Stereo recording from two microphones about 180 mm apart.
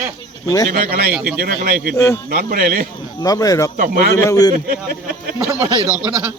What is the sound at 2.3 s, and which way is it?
Speech, 50° right (ahead or behind).